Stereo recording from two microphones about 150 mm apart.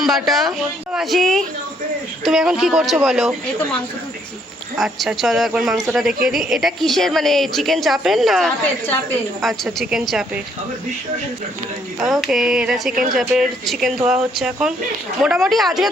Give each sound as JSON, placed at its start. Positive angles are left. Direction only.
{"t": 0.0, "sound": "a woman's voice", "side_deg": 0}
{"t": 4.8, "sound": "a woman's voice", "side_deg": 0}
{"t": 11.9, "sound": "a woman's voice", "side_deg": 0}